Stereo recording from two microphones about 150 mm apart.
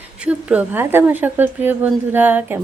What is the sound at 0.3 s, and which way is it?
A woman's voice, 10° right (ahead or behind).